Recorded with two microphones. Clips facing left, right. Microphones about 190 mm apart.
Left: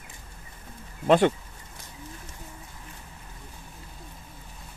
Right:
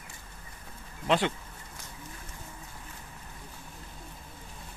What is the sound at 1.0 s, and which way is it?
Speech, 50° left (ahead or behind).